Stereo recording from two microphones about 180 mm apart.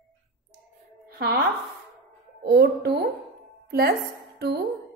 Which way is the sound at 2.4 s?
65° right (ahead or behind).